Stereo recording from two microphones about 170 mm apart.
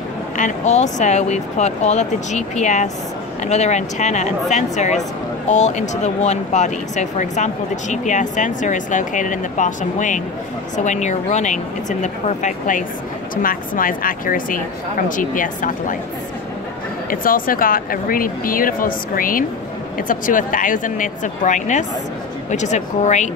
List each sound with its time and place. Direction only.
0.4 s speech: 45° left (ahead or behind)
17.1 s speech: 55° left (ahead or behind)